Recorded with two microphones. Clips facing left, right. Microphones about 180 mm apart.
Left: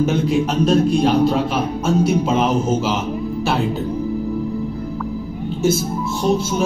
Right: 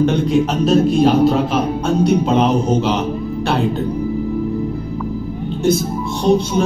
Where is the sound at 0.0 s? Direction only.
Centre (ahead or behind).